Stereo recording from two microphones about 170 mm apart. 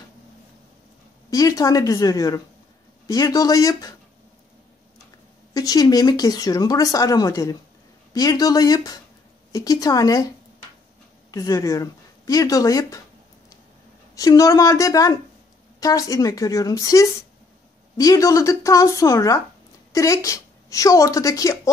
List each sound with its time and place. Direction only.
1.3 s speech: 20° left (ahead or behind)
5.5 s speech: 20° left (ahead or behind)
11.3 s speech: 20° left (ahead or behind)
14.1 s a woman's voice: 20° left (ahead or behind)